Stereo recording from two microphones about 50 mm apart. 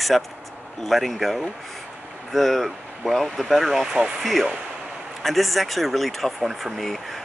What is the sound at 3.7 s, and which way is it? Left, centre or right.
Speech, right.